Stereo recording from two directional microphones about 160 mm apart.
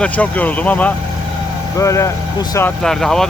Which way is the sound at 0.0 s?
10° left (ahead or behind).